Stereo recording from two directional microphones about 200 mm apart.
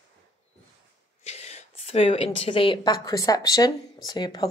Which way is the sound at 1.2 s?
30° left (ahead or behind).